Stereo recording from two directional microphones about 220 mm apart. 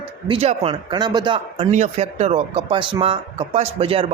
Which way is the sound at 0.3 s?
25° right (ahead or behind).